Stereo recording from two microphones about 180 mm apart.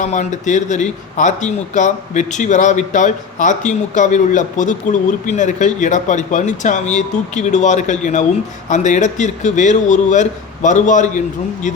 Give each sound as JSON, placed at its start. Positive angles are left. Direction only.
{"t": 0.0, "sound": "a man's voice", "side_deg": 40}